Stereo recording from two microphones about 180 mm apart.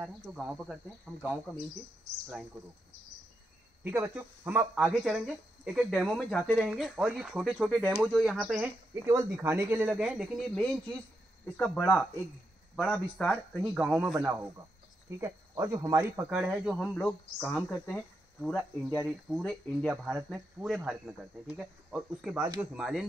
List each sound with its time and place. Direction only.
0.3 s speech: 5° right (ahead or behind)
3.8 s speech: 10° right (ahead or behind)
9.0 s speech: 15° right (ahead or behind)
16.3 s speech: 5° right (ahead or behind)